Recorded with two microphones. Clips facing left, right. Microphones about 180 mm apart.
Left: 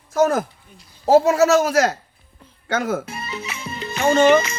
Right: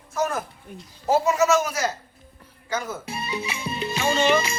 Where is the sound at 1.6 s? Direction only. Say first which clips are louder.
Left 9 dB; 85° left.